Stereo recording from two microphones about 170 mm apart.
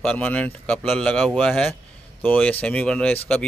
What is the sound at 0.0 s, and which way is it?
Speech, 10° left (ahead or behind).